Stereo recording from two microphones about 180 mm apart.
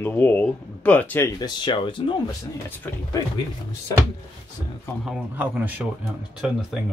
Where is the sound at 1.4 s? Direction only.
25° left (ahead or behind).